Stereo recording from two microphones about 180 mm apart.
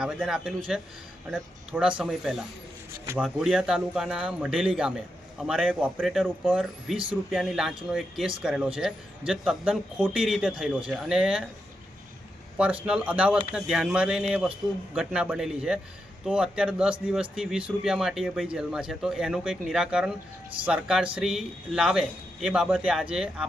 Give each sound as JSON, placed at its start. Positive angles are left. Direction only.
{"t": 0.0, "sound": "speech", "side_deg": -5}
{"t": 1.7, "sound": "speech", "side_deg": -5}
{"t": 12.5, "sound": "speech", "side_deg": -5}